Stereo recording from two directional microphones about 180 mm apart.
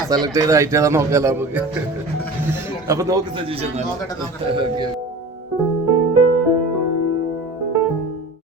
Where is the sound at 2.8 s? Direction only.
15° right (ahead or behind).